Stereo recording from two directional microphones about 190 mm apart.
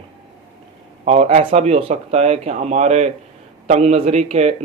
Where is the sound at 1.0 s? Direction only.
35° right (ahead or behind).